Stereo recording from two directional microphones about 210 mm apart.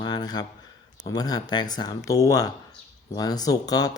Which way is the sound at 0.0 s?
20° left (ahead or behind).